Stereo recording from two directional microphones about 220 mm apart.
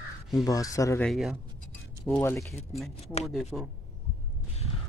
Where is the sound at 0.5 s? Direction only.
15° left (ahead or behind).